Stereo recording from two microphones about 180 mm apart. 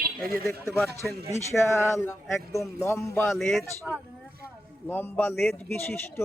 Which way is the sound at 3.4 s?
Centre (ahead or behind).